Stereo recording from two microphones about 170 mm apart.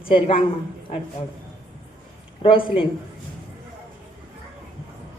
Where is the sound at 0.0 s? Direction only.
35° left (ahead or behind).